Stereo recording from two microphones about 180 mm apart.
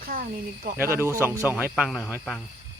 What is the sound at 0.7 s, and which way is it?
Speech, 15° right (ahead or behind).